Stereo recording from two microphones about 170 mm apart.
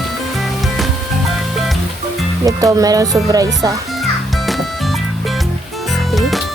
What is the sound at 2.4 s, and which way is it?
Speech, 20° right (ahead or behind).